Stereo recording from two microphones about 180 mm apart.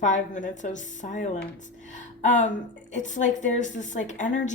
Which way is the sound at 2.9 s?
45° left (ahead or behind).